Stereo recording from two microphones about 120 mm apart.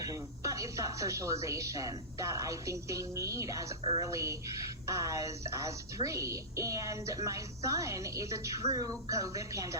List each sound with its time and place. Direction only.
0.0 s a woman's voice: 25° right (ahead or behind)